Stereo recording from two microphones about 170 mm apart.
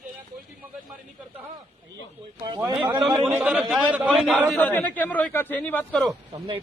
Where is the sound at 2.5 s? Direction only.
20° right (ahead or behind).